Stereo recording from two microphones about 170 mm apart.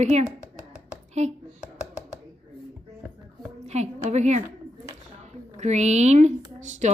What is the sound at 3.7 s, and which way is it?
A woman's voice, 40° right (ahead or behind).